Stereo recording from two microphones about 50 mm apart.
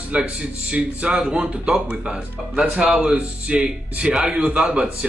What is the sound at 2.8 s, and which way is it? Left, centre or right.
Speech, right.